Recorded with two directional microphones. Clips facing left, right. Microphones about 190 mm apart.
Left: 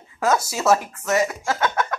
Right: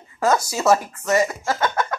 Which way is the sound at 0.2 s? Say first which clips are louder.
Right 1 dB; centre (ahead or behind).